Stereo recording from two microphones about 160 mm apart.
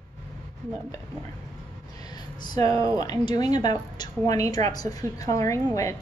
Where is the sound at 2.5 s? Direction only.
25° left (ahead or behind).